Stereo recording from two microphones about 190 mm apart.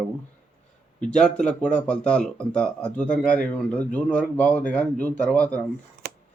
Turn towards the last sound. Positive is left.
turn(degrees=-55)  # may be behind; listen again after turning